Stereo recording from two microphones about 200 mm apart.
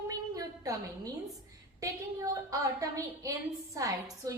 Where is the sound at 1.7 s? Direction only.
15° right (ahead or behind).